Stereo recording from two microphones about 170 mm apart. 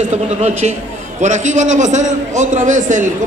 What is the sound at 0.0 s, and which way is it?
A man's voice, 40° right (ahead or behind).